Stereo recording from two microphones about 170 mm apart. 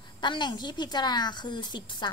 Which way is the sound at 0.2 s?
25° left (ahead or behind).